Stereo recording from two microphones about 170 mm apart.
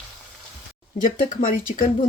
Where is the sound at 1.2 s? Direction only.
55° left (ahead or behind).